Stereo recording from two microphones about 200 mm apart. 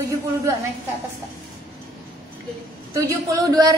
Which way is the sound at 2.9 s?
15° right (ahead or behind).